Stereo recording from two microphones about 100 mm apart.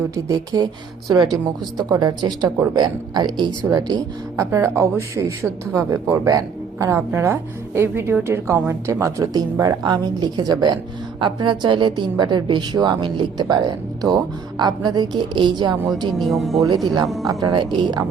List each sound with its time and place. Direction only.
0.3 s a woman's voice: 40° right (ahead or behind)
4.4 s a woman's voice: 30° right (ahead or behind); by 15.8 s 45° right (ahead or behind)
16.1 s speech: centre (ahead or behind)
16.6 s a woman's voice: 40° right (ahead or behind)
17.6 s a woman's voice: 50° right (ahead or behind)